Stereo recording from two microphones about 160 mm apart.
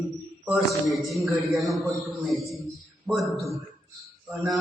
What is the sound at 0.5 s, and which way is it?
A man's voice, centre (ahead or behind).